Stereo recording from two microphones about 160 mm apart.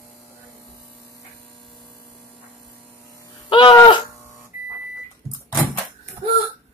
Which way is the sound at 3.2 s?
30° left (ahead or behind).